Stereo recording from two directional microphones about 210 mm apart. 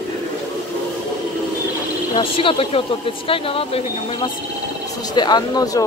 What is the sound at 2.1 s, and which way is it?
Speech, 25° left (ahead or behind).